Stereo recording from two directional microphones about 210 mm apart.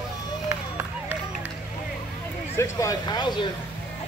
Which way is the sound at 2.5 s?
15° left (ahead or behind).